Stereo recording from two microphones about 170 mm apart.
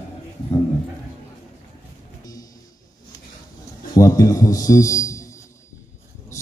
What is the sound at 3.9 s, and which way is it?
A man's voice, 20° left (ahead or behind).